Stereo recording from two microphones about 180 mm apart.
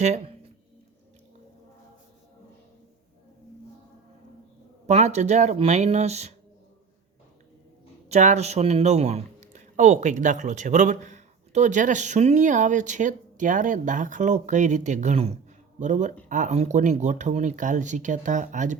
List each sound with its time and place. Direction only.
4.9 s speech: 40° right (ahead or behind)
8.1 s speech: 40° right (ahead or behind)